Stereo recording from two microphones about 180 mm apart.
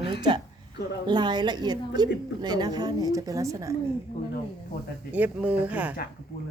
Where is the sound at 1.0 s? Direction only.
25° right (ahead or behind).